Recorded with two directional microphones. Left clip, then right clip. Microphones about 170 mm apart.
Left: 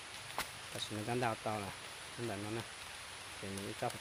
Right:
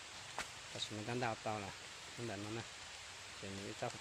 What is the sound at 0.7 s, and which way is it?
Speech, 5° left (ahead or behind).